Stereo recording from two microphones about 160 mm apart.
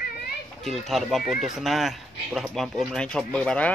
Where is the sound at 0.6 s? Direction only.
Centre (ahead or behind).